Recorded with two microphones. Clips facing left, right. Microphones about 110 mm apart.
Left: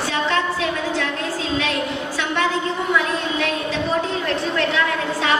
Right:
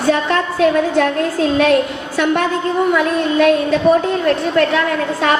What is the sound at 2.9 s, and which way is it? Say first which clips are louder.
Speech: right 7 dB; 50° right (ahead or behind).